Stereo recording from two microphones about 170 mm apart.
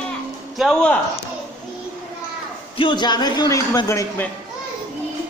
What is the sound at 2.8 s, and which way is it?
A man's voice, 25° left (ahead or behind).